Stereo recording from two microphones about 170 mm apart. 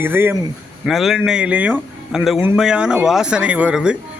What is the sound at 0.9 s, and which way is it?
A man's voice, centre (ahead or behind).